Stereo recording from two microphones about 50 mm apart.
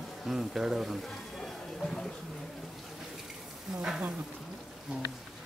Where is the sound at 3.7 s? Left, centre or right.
Centre.